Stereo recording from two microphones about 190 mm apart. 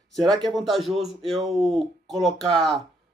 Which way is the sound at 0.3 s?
20° right (ahead or behind).